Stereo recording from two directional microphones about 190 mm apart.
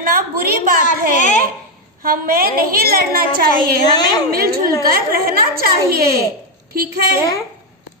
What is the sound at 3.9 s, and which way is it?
Speech, 20° left (ahead or behind).